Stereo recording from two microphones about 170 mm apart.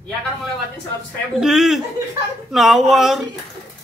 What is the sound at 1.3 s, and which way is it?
Speech, 5° right (ahead or behind).